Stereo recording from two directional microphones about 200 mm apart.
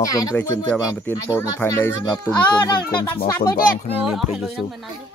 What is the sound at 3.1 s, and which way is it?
Speech, 50° left (ahead or behind).